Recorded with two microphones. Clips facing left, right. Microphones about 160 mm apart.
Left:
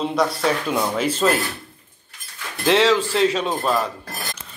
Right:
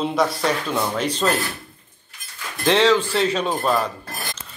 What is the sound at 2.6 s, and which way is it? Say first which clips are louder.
Speech: even; centre (ahead or behind).